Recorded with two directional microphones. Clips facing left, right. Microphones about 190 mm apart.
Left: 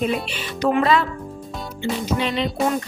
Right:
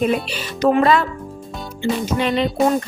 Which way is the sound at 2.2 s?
50° right (ahead or behind).